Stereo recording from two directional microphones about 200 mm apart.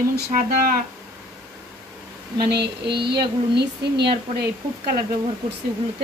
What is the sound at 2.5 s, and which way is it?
Speech, 55° right (ahead or behind).